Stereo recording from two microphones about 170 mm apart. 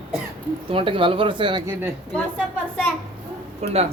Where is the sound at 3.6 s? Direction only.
40° right (ahead or behind).